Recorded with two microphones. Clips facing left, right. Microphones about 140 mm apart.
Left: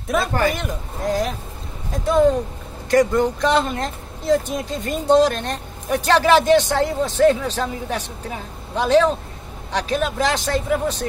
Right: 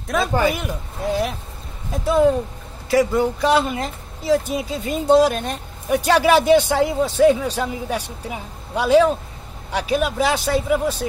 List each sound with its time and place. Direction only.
0.1 s a woman's voice: centre (ahead or behind)